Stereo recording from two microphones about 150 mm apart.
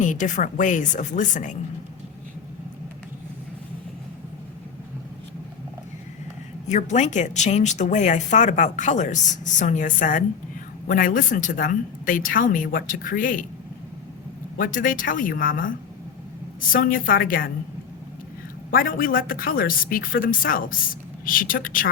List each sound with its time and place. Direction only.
0.0 s a woman's voice: 55° left (ahead or behind)
6.7 s a woman's voice: 50° left (ahead or behind)
14.6 s a woman's voice: 65° left (ahead or behind)
18.7 s a woman's voice: 75° left (ahead or behind)